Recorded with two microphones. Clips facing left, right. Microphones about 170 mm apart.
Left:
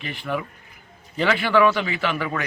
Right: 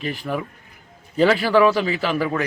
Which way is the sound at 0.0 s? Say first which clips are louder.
Right 2 dB; 40° right (ahead or behind).